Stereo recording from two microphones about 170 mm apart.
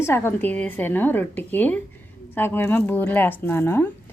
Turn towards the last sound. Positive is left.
turn(degrees=10)  # may be behind; listen again after turning